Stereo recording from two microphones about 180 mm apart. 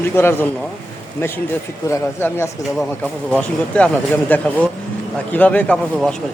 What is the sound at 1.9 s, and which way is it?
Speech, 15° left (ahead or behind).